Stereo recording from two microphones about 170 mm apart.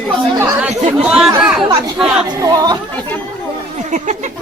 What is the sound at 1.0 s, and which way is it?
Speech, 5° right (ahead or behind).